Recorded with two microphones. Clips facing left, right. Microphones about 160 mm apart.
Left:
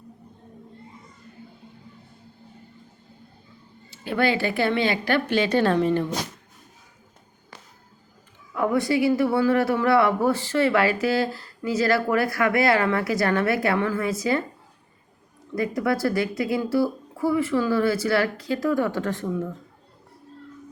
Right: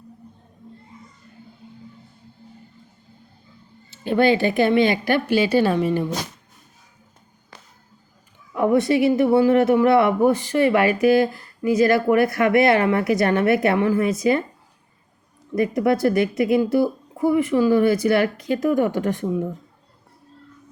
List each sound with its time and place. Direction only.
4.0 s a woman's voice: 20° right (ahead or behind)
8.5 s speech: 20° right (ahead or behind)
15.5 s speech: 20° right (ahead or behind)